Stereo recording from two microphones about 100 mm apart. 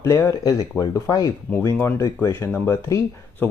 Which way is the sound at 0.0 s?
25° left (ahead or behind).